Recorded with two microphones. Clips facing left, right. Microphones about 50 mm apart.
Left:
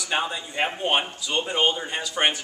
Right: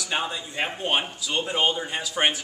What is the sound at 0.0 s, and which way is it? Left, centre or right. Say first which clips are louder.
A man's voice: left 2 dB; centre.